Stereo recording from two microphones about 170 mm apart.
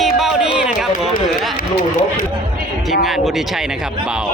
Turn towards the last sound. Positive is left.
turn(degrees=0)  # may be behind; listen again after turning